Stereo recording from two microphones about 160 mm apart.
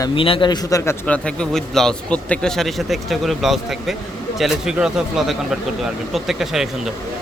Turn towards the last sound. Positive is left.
turn(degrees=-5)  # may be behind; listen again after turning